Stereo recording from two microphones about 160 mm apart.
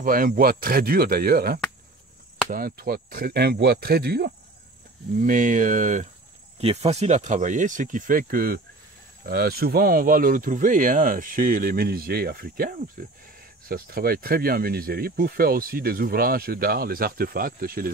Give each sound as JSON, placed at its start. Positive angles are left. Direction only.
{"t": 0.0, "sound": "speech", "side_deg": -65}
{"t": 5.1, "sound": "speech", "side_deg": -55}
{"t": 6.6, "sound": "speech", "side_deg": -40}
{"t": 9.3, "sound": "speech", "side_deg": -80}